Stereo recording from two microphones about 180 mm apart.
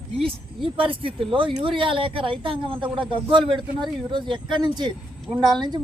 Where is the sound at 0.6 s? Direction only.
30° right (ahead or behind).